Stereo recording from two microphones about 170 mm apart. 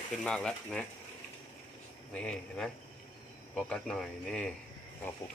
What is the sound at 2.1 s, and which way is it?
A man's voice, 5° left (ahead or behind).